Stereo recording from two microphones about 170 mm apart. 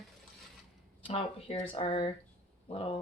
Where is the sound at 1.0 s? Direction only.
30° left (ahead or behind).